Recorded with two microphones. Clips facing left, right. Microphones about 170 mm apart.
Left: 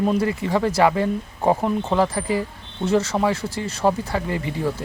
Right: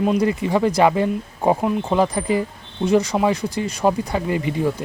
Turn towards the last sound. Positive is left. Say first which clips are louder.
# right 3 dB
turn(degrees=-15)  # may be behind; listen again after turning